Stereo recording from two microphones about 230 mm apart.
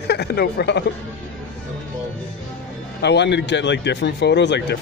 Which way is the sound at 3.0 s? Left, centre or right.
Left.